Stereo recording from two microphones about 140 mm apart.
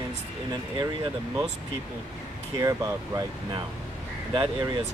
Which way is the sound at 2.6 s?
25° right (ahead or behind).